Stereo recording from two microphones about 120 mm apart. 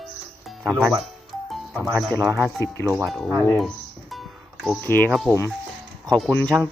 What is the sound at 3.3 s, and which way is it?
Speech, 20° left (ahead or behind).